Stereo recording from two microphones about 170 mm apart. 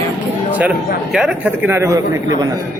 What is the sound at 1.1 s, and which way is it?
Speech, 5° right (ahead or behind).